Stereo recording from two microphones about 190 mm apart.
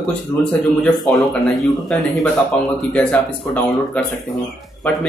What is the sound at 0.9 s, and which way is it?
A man's voice, centre (ahead or behind).